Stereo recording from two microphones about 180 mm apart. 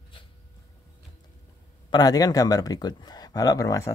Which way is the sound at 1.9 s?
20° left (ahead or behind).